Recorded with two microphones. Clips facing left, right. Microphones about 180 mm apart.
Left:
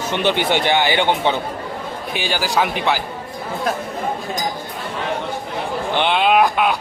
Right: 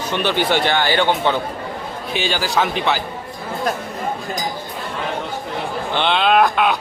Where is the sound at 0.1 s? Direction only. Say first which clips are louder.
Even; 20° left (ahead or behind).